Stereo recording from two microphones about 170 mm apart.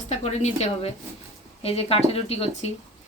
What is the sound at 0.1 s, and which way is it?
Speech, 40° left (ahead or behind).